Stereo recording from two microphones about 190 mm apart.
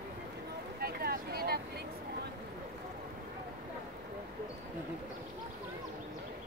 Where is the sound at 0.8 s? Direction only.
55° right (ahead or behind).